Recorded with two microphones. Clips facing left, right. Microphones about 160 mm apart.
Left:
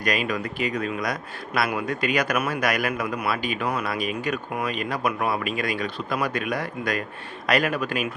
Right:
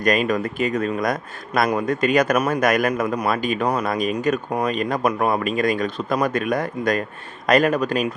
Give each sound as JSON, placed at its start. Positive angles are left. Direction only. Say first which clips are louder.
{"t": 0.0, "sound": "speech", "louder": "right 6 dB", "side_deg": -45}